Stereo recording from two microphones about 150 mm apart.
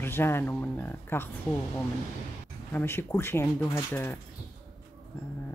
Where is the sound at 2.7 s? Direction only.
15° left (ahead or behind).